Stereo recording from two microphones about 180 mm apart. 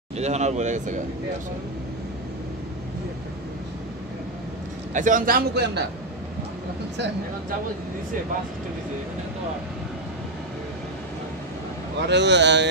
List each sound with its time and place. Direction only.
0.2 s speech: 40° right (ahead or behind)
4.9 s a man's voice: 45° right (ahead or behind); by 5.9 s 65° right (ahead or behind)
12.1 s speech: 75° right (ahead or behind)